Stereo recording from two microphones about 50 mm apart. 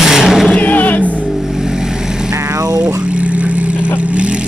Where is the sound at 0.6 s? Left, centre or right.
Left.